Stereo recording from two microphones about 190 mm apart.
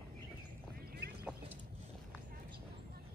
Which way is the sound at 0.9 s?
55° right (ahead or behind).